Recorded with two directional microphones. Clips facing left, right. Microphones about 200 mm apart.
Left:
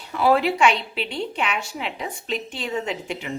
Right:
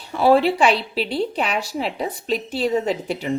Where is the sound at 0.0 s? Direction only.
30° right (ahead or behind).